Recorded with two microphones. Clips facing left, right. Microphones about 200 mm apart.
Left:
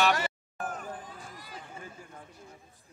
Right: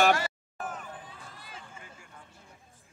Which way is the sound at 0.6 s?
45° left (ahead or behind).